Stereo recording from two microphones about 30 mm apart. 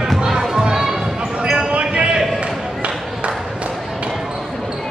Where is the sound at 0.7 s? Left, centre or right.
Centre.